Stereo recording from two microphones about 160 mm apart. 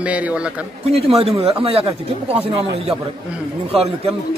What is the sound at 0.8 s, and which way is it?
Speech, 40° right (ahead or behind).